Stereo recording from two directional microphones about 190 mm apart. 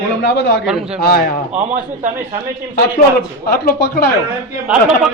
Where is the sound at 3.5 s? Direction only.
55° left (ahead or behind).